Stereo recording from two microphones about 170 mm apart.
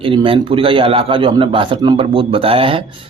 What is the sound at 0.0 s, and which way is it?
Speech, 30° right (ahead or behind).